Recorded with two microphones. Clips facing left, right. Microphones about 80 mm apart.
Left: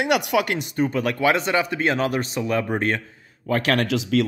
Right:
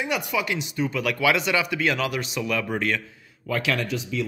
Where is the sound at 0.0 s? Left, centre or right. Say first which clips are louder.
Left 6 dB; left.